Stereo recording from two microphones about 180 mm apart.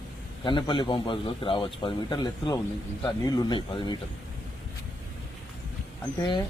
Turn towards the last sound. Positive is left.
turn(degrees=25)  # may be behind; listen again after turning